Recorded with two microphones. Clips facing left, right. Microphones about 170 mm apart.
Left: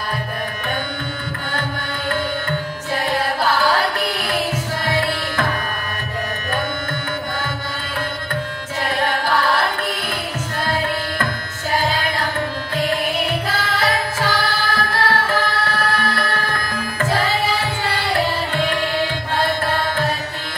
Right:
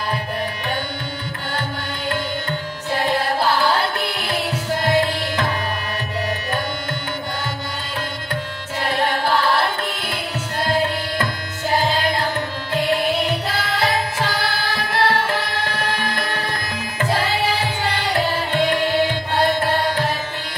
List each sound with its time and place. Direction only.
13.7 s music: 20° right (ahead or behind)
18.5 s music: 20° right (ahead or behind)